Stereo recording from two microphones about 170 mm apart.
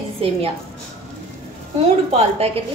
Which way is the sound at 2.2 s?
35° right (ahead or behind).